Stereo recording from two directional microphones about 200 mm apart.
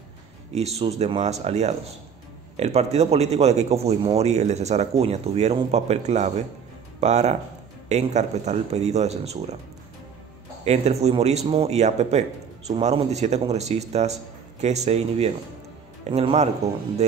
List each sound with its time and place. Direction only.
0.6 s speech: 30° right (ahead or behind)
10.6 s speech: 35° right (ahead or behind)